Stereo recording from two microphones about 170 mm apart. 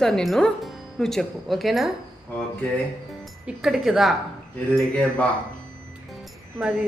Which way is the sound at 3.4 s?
Centre (ahead or behind).